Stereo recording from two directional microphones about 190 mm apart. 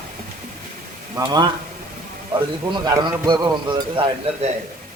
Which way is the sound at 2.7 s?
20° right (ahead or behind).